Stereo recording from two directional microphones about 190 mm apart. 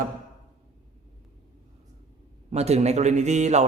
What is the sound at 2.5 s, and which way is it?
Speech, 35° right (ahead or behind).